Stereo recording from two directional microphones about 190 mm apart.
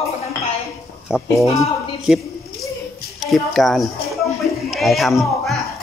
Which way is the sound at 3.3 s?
Centre (ahead or behind).